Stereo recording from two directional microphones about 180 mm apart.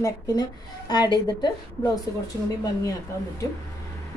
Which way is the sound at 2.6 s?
20° left (ahead or behind).